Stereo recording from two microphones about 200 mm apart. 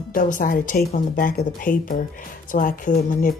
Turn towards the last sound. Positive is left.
turn(degrees=45)  # may be behind; listen again after turning